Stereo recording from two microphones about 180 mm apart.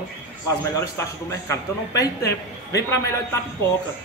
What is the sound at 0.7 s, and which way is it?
A man's voice, 15° left (ahead or behind).